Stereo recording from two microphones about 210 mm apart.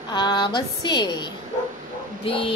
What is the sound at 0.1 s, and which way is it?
Speech, 20° left (ahead or behind).